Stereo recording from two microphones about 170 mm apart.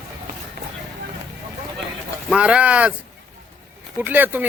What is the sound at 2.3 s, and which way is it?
Speech, 5° right (ahead or behind).